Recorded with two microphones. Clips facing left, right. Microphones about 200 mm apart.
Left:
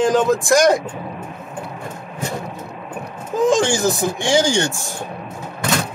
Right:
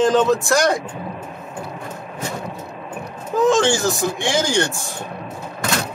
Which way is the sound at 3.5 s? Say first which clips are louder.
Left 1 dB; 15° left (ahead or behind).